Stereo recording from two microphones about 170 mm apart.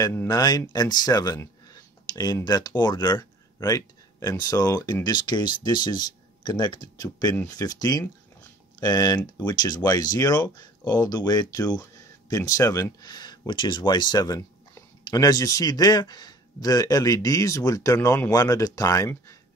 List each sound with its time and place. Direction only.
0.3 s speech: 25° left (ahead or behind)